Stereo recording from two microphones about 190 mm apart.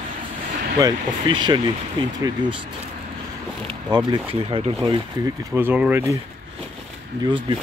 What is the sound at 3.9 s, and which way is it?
Speech, 25° right (ahead or behind).